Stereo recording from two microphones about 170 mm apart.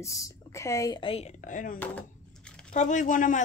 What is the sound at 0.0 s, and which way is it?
Speech, 20° left (ahead or behind).